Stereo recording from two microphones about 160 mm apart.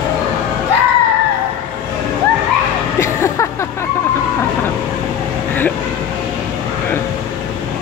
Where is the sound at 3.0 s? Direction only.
20° left (ahead or behind).